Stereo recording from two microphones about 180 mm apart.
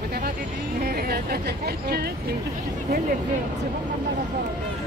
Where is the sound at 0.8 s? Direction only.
55° right (ahead or behind).